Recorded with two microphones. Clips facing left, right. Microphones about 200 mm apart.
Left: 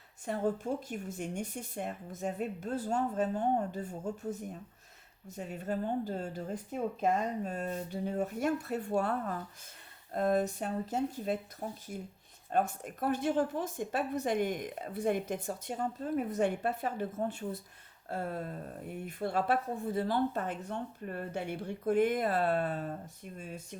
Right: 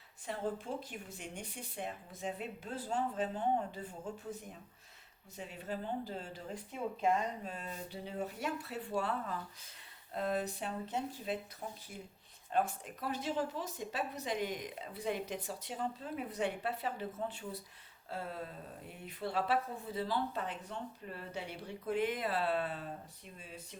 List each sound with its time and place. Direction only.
0.3 s a woman's voice: 45° left (ahead or behind)
5.4 s a woman's voice: 45° left (ahead or behind)